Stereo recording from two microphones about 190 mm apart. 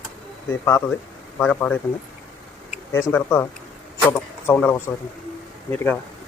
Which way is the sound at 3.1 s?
10° left (ahead or behind).